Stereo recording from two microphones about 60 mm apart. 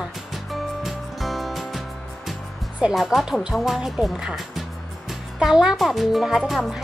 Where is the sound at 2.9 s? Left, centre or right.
Centre.